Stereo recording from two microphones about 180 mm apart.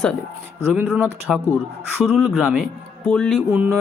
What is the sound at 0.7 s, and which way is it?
Speech, 15° right (ahead or behind).